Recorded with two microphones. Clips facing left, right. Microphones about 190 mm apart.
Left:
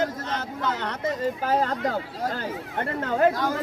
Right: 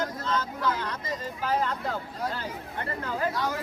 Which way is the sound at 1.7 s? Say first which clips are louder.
Left 5 dB; 90° left.